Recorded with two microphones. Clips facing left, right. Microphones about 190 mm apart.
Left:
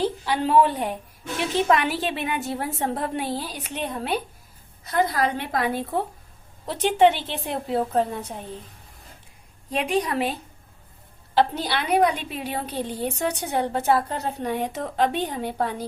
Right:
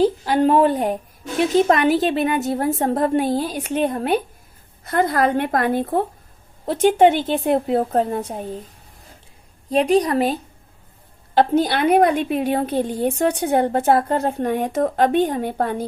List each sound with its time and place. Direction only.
0.0 s a woman's voice: 45° right (ahead or behind)
9.6 s a woman's voice: 40° right (ahead or behind)
11.3 s a woman's voice: 50° right (ahead or behind)